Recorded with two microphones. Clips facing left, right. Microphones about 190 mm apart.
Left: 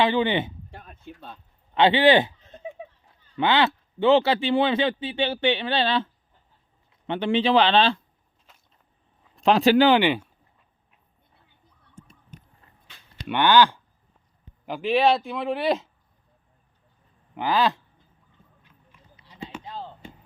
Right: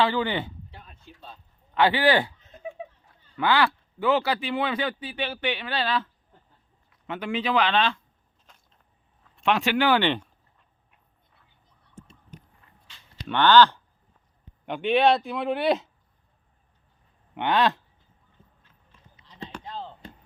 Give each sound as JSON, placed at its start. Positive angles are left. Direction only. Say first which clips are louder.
{"t": 0.0, "sound": "speech", "louder": "left 3 dB", "side_deg": 20}
{"t": 0.7, "sound": "a sound", "louder": "left 6 dB", "side_deg": 50}
{"t": 1.7, "sound": "a man's voice", "louder": "left 4 dB", "side_deg": 25}
{"t": 8.5, "sound": "walk", "louder": "even", "side_deg": 5}
{"t": 9.3, "sound": "speech", "louder": "left 6 dB", "side_deg": 35}
{"t": 9.9, "sound": "speech", "louder": "left 3 dB", "side_deg": 10}
{"t": 12.9, "sound": "a sound", "louder": "left 3 dB", "side_deg": 55}
{"t": 13.2, "sound": "speech", "louder": "right 1 dB", "side_deg": 15}
{"t": 14.7, "sound": "speech", "louder": "even", "side_deg": 0}
{"t": 17.3, "sound": "speech", "louder": "even", "side_deg": 0}
{"t": 18.6, "sound": "a sound", "louder": "left 2 dB", "side_deg": 10}